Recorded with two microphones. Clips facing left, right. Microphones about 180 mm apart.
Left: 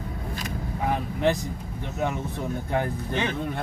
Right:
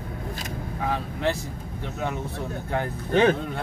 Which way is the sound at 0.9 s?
15° left (ahead or behind).